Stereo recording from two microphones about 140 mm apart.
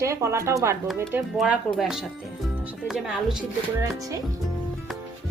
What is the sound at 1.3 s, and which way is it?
Speech, centre (ahead or behind).